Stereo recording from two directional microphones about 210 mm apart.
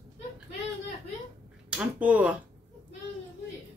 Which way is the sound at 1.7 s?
5° right (ahead or behind).